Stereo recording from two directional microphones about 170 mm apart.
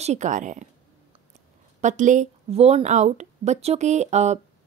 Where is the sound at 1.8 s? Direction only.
45° right (ahead or behind).